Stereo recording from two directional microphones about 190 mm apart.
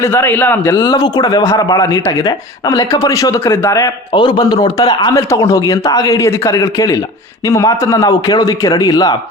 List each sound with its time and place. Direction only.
0.0 s a man's voice: 15° left (ahead or behind)
0.9 s speech: 25° left (ahead or behind)